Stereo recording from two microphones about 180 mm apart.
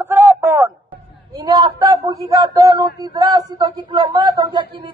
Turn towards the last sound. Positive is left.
turn(degrees=-25)  # may be behind; listen again after turning